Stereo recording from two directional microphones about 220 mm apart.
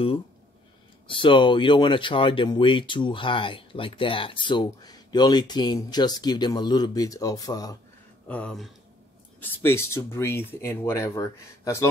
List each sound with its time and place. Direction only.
1.0 s speech: 25° left (ahead or behind)
8.3 s speech: 5° left (ahead or behind)